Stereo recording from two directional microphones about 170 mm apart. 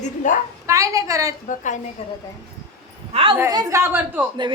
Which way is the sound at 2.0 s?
35° left (ahead or behind).